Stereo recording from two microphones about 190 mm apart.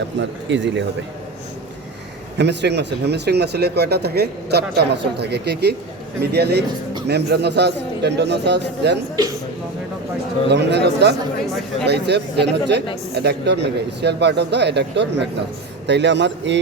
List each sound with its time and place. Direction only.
0.2 s speech: 70° right (ahead or behind)
2.4 s speech: 65° right (ahead or behind)
10.5 s speech: 65° right (ahead or behind)
11.4 s speech: centre (ahead or behind)
11.9 s speech: 60° right (ahead or behind)